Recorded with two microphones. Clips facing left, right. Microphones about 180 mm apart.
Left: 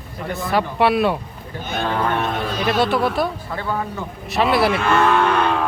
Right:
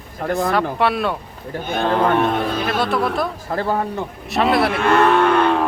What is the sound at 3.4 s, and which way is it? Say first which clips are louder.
Speech: right 4 dB; 40° right (ahead or behind).